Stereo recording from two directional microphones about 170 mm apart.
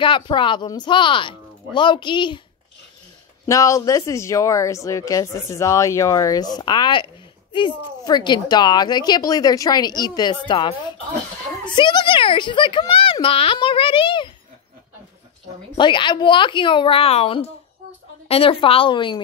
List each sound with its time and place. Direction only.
0.0 s speech: 30° left (ahead or behind)
3.4 s speech: 20° left (ahead or behind)
15.8 s a woman's voice: 25° left (ahead or behind)